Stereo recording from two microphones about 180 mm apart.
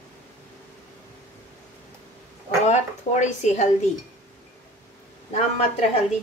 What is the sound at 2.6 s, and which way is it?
A woman's voice, 40° left (ahead or behind).